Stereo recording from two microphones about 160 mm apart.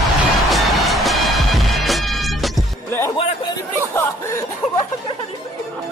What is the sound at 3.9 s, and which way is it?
Music, 15° left (ahead or behind).